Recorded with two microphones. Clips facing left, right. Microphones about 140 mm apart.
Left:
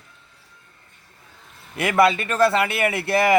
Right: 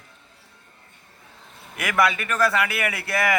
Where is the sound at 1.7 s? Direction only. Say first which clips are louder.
Left 4 dB; 30° left (ahead or behind).